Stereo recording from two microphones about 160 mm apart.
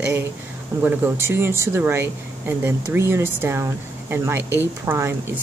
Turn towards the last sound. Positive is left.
turn(degrees=-15)  # may be behind; listen again after turning